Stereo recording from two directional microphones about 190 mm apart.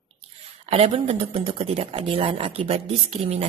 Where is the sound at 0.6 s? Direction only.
30° right (ahead or behind).